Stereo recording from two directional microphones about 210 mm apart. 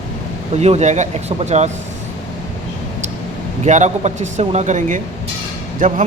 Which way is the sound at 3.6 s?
35° right (ahead or behind).